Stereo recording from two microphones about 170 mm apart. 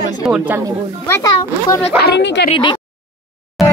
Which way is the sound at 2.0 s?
80° left.